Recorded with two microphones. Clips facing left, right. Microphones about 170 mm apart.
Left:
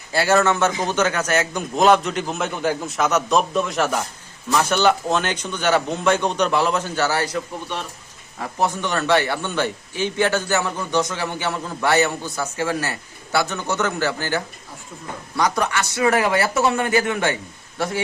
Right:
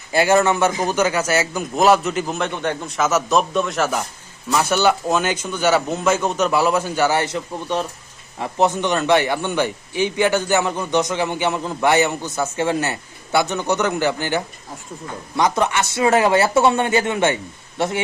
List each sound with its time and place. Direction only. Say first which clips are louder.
0.1 s a man's voice: right 2 dB; 15° right (ahead or behind)
8.4 s a man's voice: right 4 dB; 20° right (ahead or behind)